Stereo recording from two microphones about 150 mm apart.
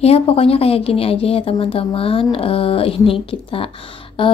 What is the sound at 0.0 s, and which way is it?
A woman's voice, 40° left (ahead or behind).